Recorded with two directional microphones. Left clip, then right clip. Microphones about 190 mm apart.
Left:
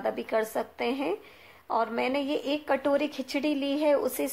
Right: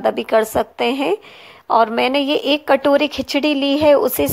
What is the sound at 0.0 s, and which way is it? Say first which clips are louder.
Speech: right 12 dB; 40° right (ahead or behind).